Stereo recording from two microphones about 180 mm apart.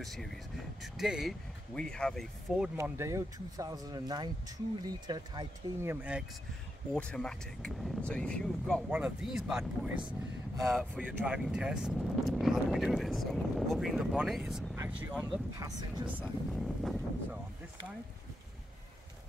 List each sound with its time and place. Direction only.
0.0 s speech: centre (ahead or behind)
2.7 s speech: 15° right (ahead or behind)
5.9 s speech: 5° right (ahead or behind)
6.9 s speech: 5° left (ahead or behind)
16.2 s speech: centre (ahead or behind)